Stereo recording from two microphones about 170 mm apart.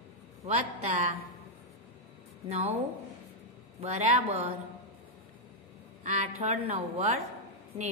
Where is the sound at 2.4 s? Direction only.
35° right (ahead or behind).